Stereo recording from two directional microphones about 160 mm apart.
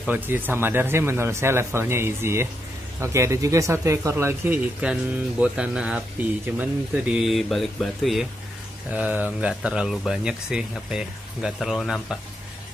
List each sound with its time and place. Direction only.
0.0 s speech: 10° right (ahead or behind)